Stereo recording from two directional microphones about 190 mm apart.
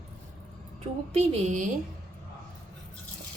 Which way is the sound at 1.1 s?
35° right (ahead or behind).